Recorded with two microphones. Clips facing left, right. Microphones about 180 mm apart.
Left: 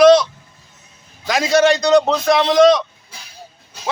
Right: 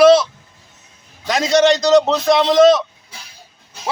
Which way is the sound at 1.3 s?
Centre (ahead or behind).